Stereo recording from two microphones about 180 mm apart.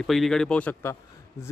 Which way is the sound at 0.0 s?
Centre (ahead or behind).